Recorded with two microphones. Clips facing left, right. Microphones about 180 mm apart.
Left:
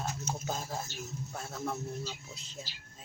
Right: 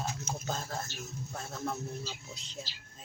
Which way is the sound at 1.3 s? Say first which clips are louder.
Right 1 dB; 5° left (ahead or behind).